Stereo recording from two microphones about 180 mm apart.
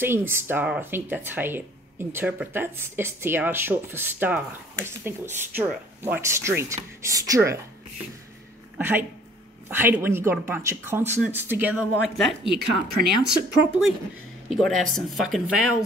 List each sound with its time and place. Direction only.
0.0 s speech: 10° right (ahead or behind)
8.7 s speech: 10° right (ahead or behind)
12.4 s speech: 65° right (ahead or behind)
14.5 s speech: centre (ahead or behind)